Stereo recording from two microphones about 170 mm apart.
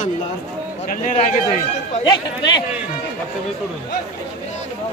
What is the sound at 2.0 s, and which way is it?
Speech, 25° left (ahead or behind).